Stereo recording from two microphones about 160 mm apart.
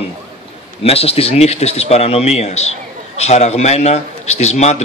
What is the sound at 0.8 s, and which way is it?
A man's voice, 40° left (ahead or behind).